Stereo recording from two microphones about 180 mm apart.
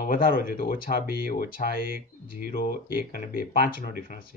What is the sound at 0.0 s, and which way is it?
Speech, 55° left (ahead or behind).